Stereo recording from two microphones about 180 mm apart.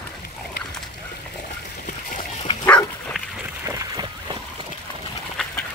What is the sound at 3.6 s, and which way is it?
Boat, 25° right (ahead or behind).